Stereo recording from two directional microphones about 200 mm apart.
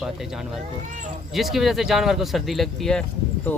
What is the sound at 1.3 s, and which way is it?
Speech, centre (ahead or behind).